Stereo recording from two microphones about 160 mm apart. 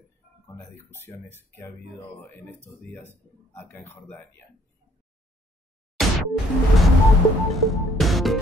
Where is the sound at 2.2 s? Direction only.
10° left (ahead or behind).